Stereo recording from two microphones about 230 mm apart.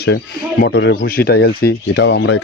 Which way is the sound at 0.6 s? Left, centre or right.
Left.